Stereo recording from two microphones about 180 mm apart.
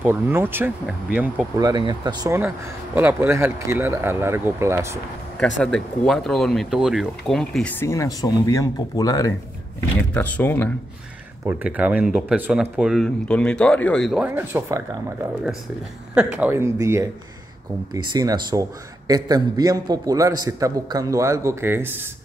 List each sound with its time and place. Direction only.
0.0 s speech: 10° right (ahead or behind)
1.6 s speech: 25° right (ahead or behind)
5.4 s speech: 5° left (ahead or behind); by 9.3 s 20° left (ahead or behind)
9.9 s speech: 10° left (ahead or behind)
11.4 s speech: 10° right (ahead or behind)
14.2 s a man's voice: 10° right (ahead or behind)